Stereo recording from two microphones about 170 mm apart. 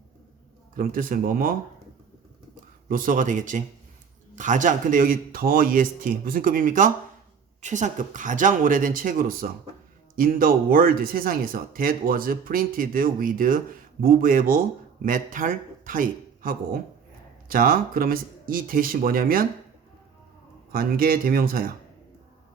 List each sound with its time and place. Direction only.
0.8 s speech: 55° right (ahead or behind)
2.9 s a man's voice: 50° right (ahead or behind)
20.7 s speech: 60° right (ahead or behind)